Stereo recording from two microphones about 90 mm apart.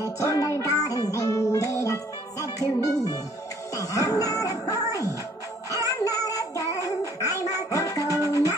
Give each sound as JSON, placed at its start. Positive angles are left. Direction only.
{"t": 0.0, "sound": "music", "side_deg": 40}